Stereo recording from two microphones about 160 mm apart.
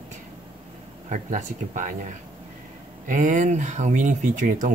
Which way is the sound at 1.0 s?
50° right (ahead or behind).